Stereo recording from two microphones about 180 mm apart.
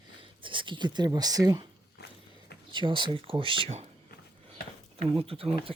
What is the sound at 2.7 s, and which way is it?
Speech, 25° right (ahead or behind).